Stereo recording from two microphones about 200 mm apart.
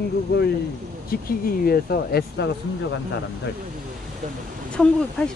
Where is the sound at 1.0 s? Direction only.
45° left (ahead or behind).